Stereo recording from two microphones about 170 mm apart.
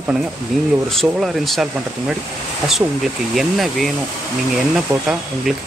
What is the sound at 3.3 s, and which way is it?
Speech, centre (ahead or behind).